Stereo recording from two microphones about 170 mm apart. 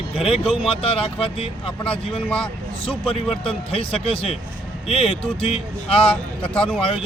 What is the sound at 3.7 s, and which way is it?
A man's voice, 30° left (ahead or behind).